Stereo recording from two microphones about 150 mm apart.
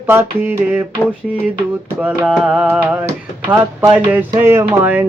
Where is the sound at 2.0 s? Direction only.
5° right (ahead or behind).